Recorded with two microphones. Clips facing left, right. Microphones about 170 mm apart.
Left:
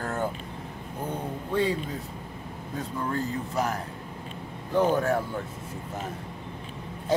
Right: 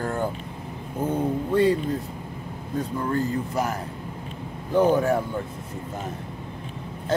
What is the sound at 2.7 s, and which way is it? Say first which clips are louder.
Speech: right 5 dB; centre (ahead or behind).